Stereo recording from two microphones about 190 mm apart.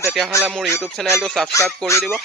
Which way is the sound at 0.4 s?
Centre (ahead or behind).